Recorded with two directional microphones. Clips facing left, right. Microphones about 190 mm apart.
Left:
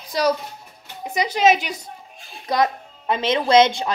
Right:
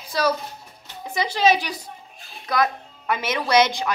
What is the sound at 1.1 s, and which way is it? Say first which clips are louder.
A woman's voice: left 2 dB; 20° left (ahead or behind).